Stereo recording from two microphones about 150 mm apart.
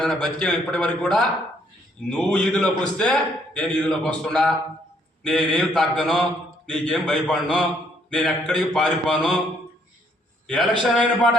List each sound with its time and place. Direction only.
0.0 s a man's voice: 5° left (ahead or behind)
10.4 s a man's voice: 5° left (ahead or behind)